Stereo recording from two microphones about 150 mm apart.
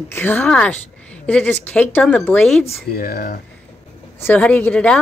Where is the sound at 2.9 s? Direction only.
75° left (ahead or behind).